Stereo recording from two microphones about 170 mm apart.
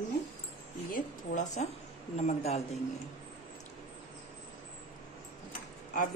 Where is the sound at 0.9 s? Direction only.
45° left (ahead or behind).